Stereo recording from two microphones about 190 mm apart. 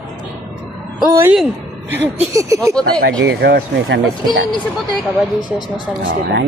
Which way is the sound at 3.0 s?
60° right (ahead or behind).